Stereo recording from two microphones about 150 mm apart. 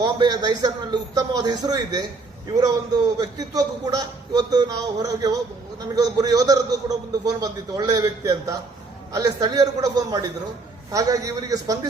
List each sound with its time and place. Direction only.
0.0 s a man's voice: 25° right (ahead or behind)
3.2 s a man's voice: 25° right (ahead or behind)